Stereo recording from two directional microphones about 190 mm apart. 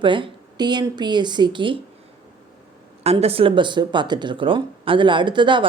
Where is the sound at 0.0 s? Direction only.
25° right (ahead or behind).